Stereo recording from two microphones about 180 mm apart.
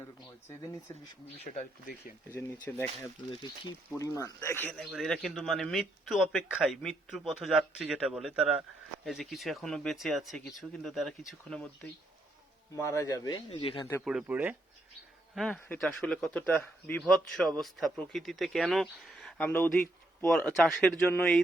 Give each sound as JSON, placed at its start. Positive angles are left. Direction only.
{"t": 0.4, "sound": "speech", "side_deg": 15}
{"t": 1.5, "sound": "speech", "side_deg": 50}
{"t": 2.3, "sound": "speech", "side_deg": 15}
{"t": 4.7, "sound": "speech", "side_deg": 0}
{"t": 12.7, "sound": "speech", "side_deg": 20}
{"t": 14.0, "sound": "speech", "side_deg": -5}
{"t": 15.4, "sound": "speech", "side_deg": 5}